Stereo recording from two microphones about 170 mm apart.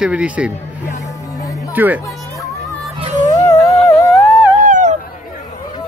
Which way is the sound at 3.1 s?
45° right (ahead or behind).